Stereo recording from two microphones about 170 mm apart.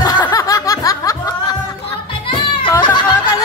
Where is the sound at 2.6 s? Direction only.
25° left (ahead or behind).